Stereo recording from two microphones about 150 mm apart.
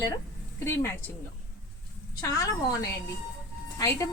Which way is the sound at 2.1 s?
20° left (ahead or behind).